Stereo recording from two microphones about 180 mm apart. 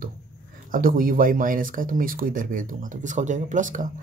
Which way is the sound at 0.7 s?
50° right (ahead or behind).